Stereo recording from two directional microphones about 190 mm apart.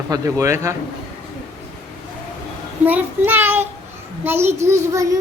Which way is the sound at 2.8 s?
10° right (ahead or behind).